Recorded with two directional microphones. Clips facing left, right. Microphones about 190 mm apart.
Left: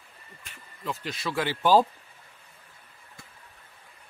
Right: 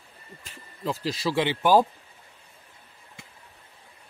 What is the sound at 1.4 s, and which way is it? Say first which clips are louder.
Speech: even; 15° right (ahead or behind).